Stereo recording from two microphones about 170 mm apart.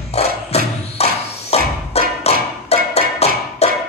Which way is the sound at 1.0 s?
40° left (ahead or behind).